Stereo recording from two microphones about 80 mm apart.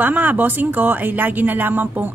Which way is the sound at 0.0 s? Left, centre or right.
Right.